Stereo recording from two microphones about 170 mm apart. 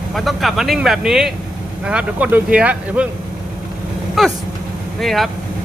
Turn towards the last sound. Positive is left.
turn(degrees=0)  # may be behind; listen again after turning